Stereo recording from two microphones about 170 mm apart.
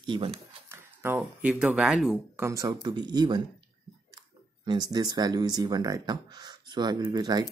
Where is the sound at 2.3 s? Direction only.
20° right (ahead or behind).